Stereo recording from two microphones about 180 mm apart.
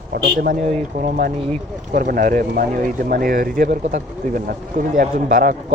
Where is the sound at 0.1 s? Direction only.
60° right (ahead or behind).